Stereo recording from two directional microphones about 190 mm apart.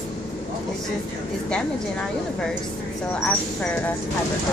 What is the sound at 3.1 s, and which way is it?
Speech, 5° left (ahead or behind).